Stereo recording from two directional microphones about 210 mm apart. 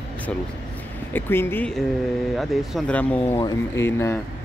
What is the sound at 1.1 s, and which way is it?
Speech, 10° left (ahead or behind).